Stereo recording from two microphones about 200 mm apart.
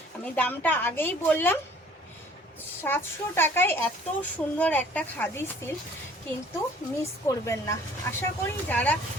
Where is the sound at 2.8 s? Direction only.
10° left (ahead or behind).